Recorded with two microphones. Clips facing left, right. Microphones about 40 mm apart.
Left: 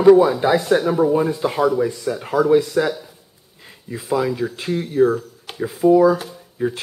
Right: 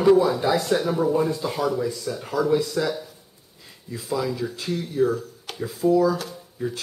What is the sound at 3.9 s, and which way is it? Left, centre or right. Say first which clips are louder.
A man's voice: left 6 dB; left.